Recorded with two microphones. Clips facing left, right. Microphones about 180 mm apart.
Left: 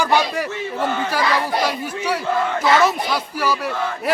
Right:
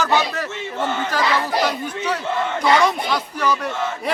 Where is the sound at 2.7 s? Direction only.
5° left (ahead or behind).